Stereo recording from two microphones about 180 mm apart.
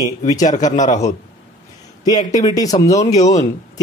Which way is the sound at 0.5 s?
45° left (ahead or behind).